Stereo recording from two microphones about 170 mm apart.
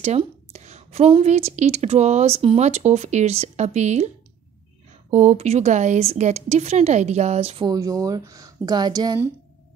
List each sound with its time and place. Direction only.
0.0 s a woman's voice: 40° right (ahead or behind)
5.1 s a woman's voice: 40° right (ahead or behind)
7.7 s speech: 20° right (ahead or behind)